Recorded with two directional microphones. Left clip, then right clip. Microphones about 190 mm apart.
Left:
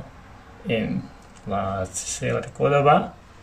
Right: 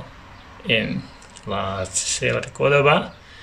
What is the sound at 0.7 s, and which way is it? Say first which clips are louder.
Speech: right 5 dB; centre (ahead or behind).